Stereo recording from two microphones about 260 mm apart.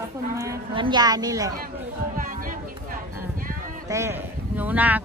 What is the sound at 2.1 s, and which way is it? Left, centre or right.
Speech, right.